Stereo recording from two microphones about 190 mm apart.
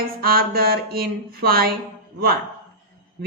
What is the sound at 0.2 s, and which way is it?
Speech, 50° right (ahead or behind).